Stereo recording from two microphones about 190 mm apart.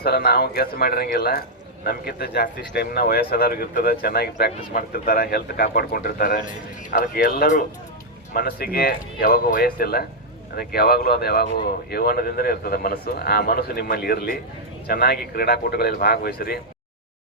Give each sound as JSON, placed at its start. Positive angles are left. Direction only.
{"t": 0.0, "sound": "a man's voice", "side_deg": 55}